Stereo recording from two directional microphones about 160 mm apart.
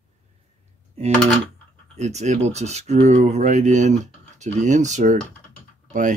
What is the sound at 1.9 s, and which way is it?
Speech, 45° right (ahead or behind).